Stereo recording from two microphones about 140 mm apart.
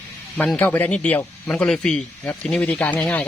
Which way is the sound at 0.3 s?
10° left (ahead or behind).